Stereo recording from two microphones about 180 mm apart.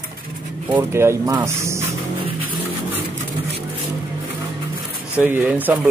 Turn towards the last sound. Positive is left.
turn(degrees=-10)  # may be behind; listen again after turning